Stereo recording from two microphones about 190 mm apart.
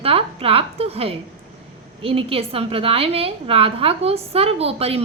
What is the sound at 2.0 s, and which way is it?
A woman's voice, 30° right (ahead or behind).